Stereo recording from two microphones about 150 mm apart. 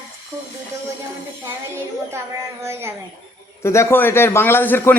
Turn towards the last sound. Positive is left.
turn(degrees=15)  # may be behind; listen again after turning